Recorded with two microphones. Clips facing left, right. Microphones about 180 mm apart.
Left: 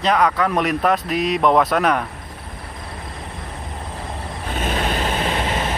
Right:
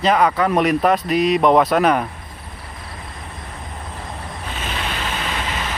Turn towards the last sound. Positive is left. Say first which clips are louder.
# left 4 dB
turn(degrees=35)  # may be behind; listen again after turning